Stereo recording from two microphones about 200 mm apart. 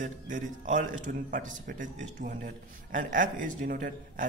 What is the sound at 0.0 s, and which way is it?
Speech, 40° right (ahead or behind).